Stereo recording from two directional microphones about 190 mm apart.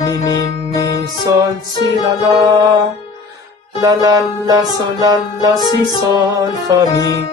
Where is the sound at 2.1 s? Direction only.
20° right (ahead or behind).